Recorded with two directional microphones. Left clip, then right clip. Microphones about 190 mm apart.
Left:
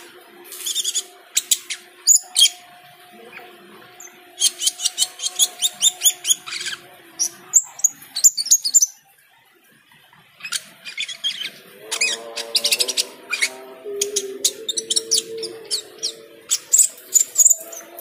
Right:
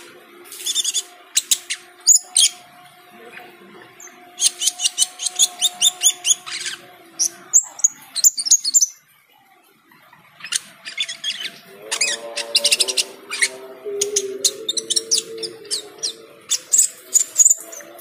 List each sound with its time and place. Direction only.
0.7 s owl: 10° right (ahead or behind)
2.1 s bird: 10° right (ahead or behind)
4.4 s bird: 10° right (ahead or behind)
10.5 s mouse: 10° right (ahead or behind)
13.9 s bird: 10° right (ahead or behind)
17.2 s mouse: 10° right (ahead or behind)